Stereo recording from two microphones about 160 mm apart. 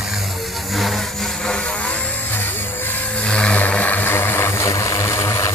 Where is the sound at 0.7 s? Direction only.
Centre (ahead or behind).